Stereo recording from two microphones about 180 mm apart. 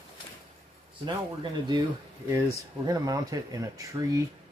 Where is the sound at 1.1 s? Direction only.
25° right (ahead or behind).